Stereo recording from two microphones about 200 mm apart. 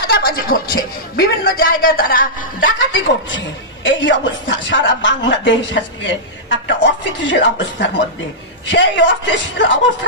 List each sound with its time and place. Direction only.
0.0 s a man's voice: 50° left (ahead or behind)
2.6 s a man's voice: 70° left (ahead or behind)